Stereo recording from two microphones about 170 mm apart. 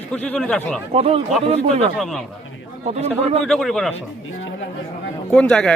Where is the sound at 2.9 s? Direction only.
40° right (ahead or behind).